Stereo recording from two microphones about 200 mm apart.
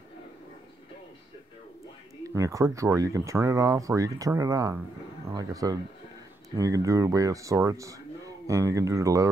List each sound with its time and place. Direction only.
2.2 s speech: 15° right (ahead or behind)